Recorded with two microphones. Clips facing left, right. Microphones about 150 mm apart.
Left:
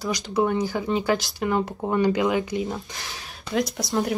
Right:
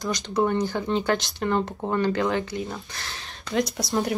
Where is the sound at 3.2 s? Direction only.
5° left (ahead or behind).